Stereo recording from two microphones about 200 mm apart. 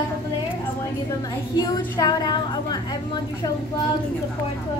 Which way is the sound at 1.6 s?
20° left (ahead or behind).